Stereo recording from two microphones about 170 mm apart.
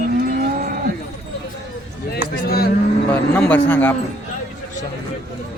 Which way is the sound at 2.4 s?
65° left (ahead or behind).